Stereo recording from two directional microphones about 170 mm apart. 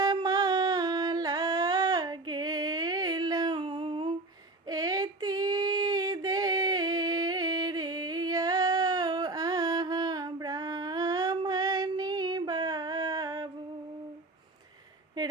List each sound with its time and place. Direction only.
0.0 s singing: 25° right (ahead or behind)
4.7 s female singing: 20° right (ahead or behind)
15.2 s a sound: 20° right (ahead or behind)